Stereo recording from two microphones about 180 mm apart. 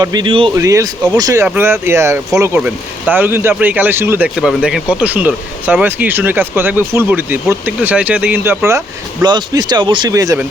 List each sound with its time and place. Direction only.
0.0 s speech: 25° right (ahead or behind)
0.5 s speech: 15° right (ahead or behind)